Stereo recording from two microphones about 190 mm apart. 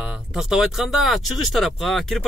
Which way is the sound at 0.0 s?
5° right (ahead or behind).